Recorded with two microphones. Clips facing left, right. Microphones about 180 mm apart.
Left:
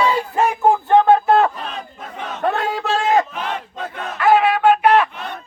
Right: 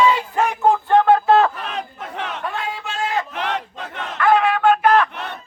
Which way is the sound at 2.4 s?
45° left (ahead or behind).